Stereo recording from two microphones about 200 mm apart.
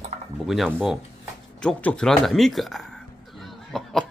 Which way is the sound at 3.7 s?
Centre (ahead or behind).